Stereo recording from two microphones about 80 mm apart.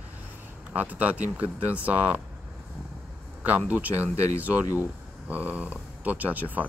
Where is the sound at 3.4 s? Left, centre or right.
Centre.